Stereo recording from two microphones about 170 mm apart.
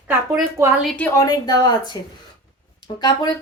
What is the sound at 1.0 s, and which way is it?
Speech, 10° left (ahead or behind).